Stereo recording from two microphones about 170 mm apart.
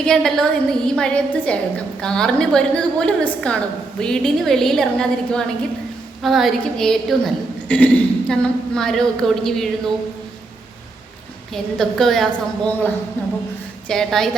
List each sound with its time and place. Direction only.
0.0 s a woman's voice: 5° left (ahead or behind)
11.5 s a woman's voice: centre (ahead or behind)